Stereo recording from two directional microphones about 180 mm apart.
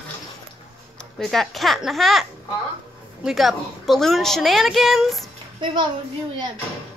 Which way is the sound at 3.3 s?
Centre (ahead or behind).